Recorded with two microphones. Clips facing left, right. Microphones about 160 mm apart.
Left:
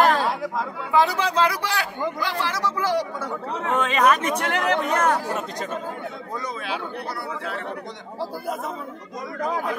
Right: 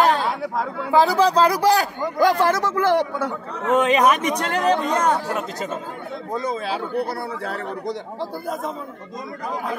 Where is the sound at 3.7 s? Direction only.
15° right (ahead or behind).